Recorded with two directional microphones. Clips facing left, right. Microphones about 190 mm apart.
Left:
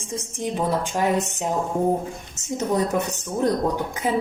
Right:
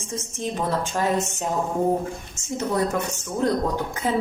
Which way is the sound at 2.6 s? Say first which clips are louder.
Left 1 dB; 20° left (ahead or behind).